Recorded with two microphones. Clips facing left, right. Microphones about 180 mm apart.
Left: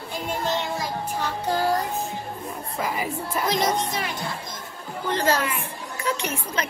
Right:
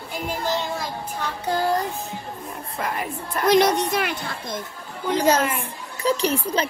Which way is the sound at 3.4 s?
65° right (ahead or behind).